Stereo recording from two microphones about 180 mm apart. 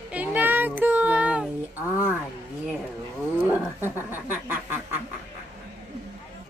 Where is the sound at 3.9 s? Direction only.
10° right (ahead or behind).